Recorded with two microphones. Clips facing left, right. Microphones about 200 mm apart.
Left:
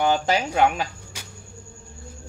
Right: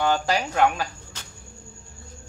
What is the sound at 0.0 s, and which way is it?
Speech, 20° left (ahead or behind).